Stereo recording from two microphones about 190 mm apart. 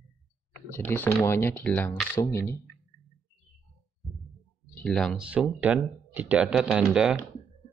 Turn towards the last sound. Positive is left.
turn(degrees=-5)  # may be behind; listen again after turning